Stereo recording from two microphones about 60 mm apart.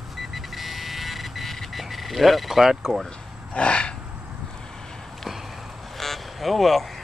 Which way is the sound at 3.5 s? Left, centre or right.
Centre.